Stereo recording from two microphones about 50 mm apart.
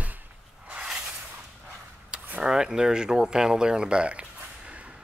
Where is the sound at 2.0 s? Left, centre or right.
Right.